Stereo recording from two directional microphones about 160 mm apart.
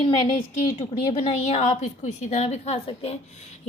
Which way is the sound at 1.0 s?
40° left (ahead or behind).